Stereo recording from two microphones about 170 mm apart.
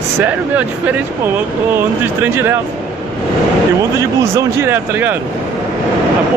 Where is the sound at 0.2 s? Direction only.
10° right (ahead or behind).